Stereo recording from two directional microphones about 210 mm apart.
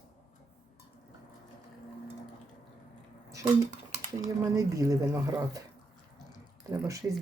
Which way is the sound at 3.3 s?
15° right (ahead or behind).